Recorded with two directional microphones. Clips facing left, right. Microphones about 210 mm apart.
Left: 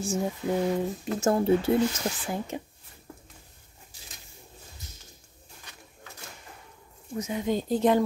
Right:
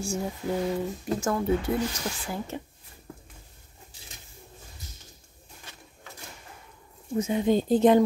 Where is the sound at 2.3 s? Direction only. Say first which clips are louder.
Left 1 dB; 15° left (ahead or behind).